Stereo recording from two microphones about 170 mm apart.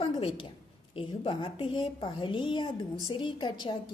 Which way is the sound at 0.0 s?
30° left (ahead or behind).